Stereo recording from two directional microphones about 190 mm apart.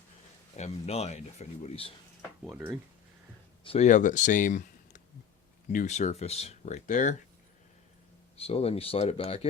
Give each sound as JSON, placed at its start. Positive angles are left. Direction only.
{"t": 0.5, "sound": "speech", "side_deg": 35}
{"t": 2.5, "sound": "speech", "side_deg": -10}
{"t": 3.6, "sound": "speech", "side_deg": 30}
{"t": 8.4, "sound": "speech", "side_deg": 30}